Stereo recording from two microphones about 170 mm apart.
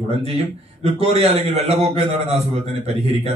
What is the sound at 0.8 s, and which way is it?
A man's voice, 35° right (ahead or behind).